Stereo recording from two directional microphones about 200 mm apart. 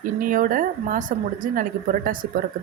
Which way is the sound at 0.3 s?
45° right (ahead or behind).